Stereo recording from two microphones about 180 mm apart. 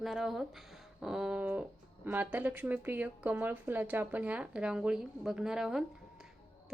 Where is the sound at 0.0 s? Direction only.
Centre (ahead or behind).